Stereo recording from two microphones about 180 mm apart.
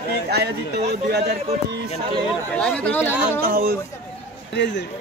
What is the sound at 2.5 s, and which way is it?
Speech, 5° left (ahead or behind).